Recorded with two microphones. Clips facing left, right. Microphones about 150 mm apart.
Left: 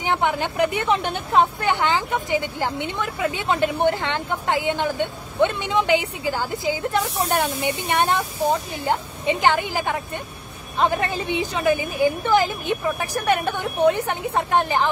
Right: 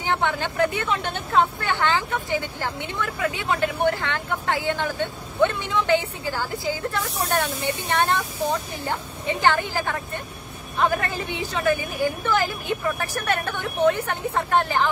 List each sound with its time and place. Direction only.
0.0 s a woman's voice: 15° left (ahead or behind)